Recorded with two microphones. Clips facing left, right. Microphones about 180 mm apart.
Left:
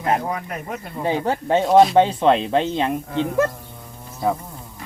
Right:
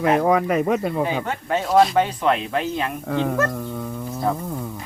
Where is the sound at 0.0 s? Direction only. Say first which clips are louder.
Right 5 dB; 80° right.